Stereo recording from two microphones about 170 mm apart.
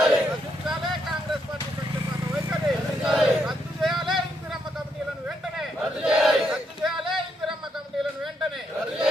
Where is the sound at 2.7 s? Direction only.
Centre (ahead or behind).